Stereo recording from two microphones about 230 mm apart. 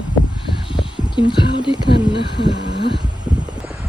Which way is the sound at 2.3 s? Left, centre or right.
Left.